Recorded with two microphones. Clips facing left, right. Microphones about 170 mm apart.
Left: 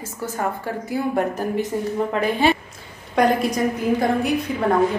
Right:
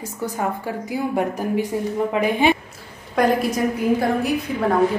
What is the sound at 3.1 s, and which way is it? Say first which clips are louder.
A woman's voice: even; 5° right (ahead or behind).